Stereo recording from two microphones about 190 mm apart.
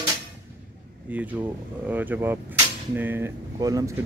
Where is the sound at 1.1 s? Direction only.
10° right (ahead or behind).